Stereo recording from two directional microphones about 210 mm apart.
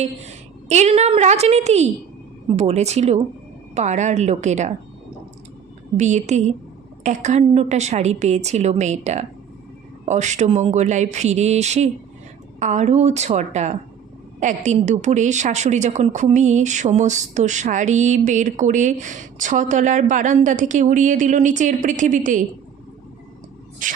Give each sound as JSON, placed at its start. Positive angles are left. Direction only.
{"t": 0.7, "sound": "a woman's voice", "side_deg": -30}
{"t": 6.0, "sound": "a woman's voice", "side_deg": -35}
{"t": 23.8, "sound": "a woman's voice", "side_deg": -40}